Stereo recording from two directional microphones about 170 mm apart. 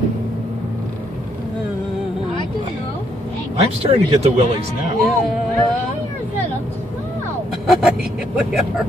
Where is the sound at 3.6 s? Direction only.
35° right (ahead or behind).